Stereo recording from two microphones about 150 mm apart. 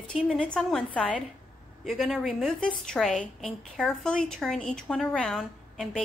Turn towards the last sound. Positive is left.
turn(degrees=0)  # may be behind; listen again after turning